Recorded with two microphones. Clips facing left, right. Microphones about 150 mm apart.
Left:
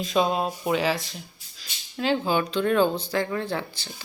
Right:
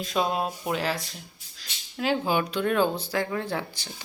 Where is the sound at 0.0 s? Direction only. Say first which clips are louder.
Left 3 dB; centre (ahead or behind).